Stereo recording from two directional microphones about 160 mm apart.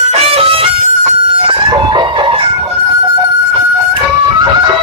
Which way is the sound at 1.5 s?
30° right (ahead or behind).